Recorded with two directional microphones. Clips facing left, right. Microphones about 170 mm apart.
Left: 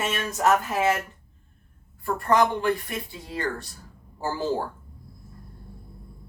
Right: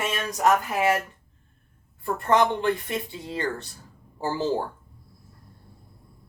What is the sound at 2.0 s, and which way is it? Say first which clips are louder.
Speech: even; 25° right (ahead or behind).